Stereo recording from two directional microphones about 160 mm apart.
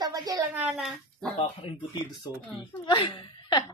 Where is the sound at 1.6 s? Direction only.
30° left (ahead or behind).